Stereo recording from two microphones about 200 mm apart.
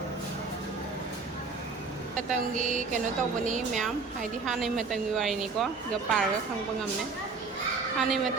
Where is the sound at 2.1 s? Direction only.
40° right (ahead or behind).